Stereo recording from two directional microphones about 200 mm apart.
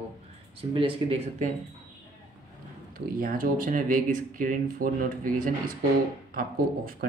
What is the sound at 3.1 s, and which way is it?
Speech, 45° right (ahead or behind).